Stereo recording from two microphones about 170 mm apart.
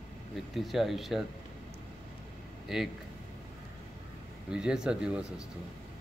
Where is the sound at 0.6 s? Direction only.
Centre (ahead or behind).